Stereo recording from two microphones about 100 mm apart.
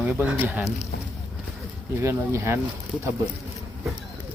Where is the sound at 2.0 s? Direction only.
25° right (ahead or behind).